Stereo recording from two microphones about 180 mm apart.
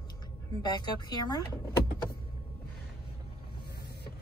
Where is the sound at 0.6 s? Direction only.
25° left (ahead or behind).